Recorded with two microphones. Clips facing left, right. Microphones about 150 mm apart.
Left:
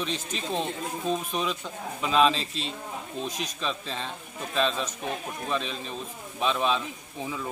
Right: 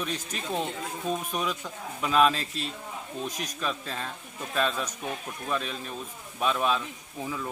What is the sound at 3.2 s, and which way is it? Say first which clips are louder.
Speech: left 1 dB; 30° left (ahead or behind).